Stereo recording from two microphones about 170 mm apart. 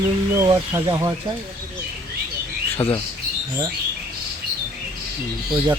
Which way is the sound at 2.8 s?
35° left (ahead or behind).